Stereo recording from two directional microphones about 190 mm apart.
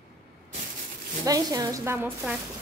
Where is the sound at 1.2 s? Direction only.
20° right (ahead or behind).